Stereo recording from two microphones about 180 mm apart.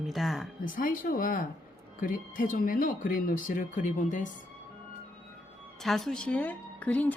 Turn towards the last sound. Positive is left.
turn(degrees=10)  # may be behind; listen again after turning